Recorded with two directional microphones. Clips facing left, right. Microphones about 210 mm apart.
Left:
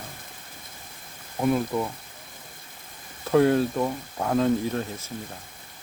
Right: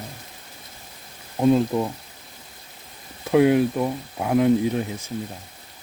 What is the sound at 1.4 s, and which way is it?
Speech, 25° right (ahead or behind).